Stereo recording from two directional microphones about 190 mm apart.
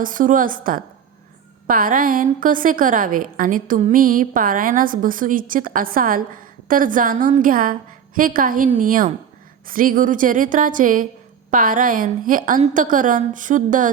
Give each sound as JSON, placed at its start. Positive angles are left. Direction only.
{"t": 0.0, "sound": "a woman's voice", "side_deg": -45}